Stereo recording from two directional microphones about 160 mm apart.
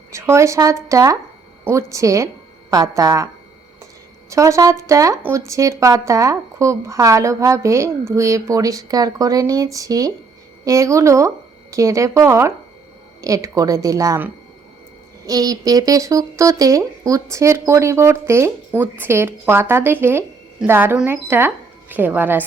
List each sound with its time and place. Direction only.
0.1 s speech: 20° right (ahead or behind)
4.3 s speech: 20° right (ahead or behind)